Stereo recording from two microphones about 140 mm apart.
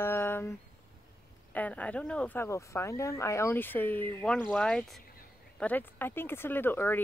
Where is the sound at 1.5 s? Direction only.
10° left (ahead or behind).